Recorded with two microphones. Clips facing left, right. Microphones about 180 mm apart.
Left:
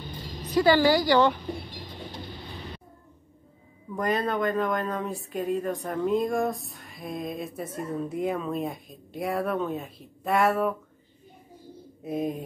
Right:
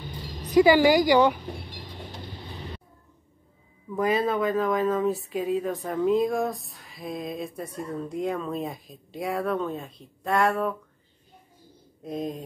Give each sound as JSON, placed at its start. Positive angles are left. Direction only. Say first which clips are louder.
{"t": 0.4, "sound": "a woman's voice", "louder": "right 3 dB", "side_deg": -15}
{"t": 3.9, "sound": "speech", "louder": "right 3 dB", "side_deg": -5}
{"t": 12.0, "sound": "a sound", "louder": "left 2 dB", "side_deg": 5}